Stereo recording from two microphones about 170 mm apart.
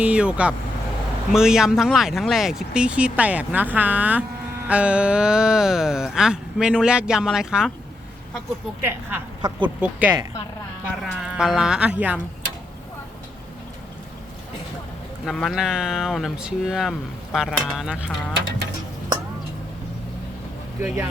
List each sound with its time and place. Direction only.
0.0 s speech: 5° right (ahead or behind)
8.8 s speech: 10° right (ahead or behind)
9.4 s speech: 25° right (ahead or behind)
9.8 s speech: 10° right (ahead or behind)
15.3 s speech: centre (ahead or behind)
20.8 s speech: 5° right (ahead or behind)